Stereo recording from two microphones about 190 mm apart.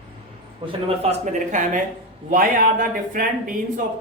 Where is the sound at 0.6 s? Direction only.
25° right (ahead or behind).